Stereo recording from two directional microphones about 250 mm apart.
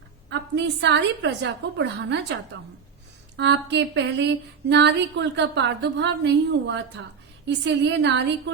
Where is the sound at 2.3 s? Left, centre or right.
Right.